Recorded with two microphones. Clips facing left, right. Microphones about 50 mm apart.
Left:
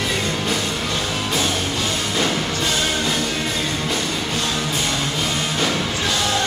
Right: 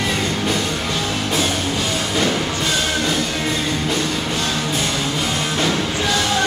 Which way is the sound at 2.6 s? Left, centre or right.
Centre.